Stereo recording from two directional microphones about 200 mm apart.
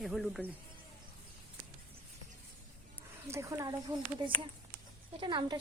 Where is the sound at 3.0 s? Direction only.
15° right (ahead or behind).